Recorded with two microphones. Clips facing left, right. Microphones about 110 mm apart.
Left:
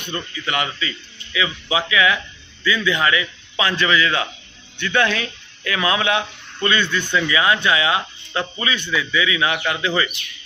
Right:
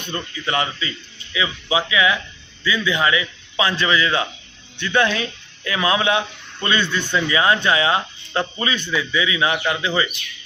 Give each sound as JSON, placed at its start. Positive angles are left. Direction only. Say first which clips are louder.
{"t": 0.1, "sound": "speech", "louder": "right 1 dB", "side_deg": -30}